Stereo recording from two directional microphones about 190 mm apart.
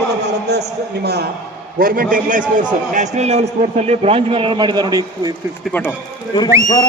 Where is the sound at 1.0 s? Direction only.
60° right (ahead or behind); by 5.3 s 20° right (ahead or behind).